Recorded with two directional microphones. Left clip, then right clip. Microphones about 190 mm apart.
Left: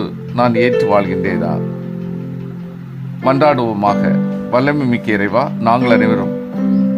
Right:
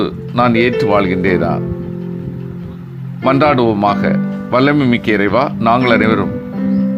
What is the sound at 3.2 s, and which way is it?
Speech, 5° right (ahead or behind).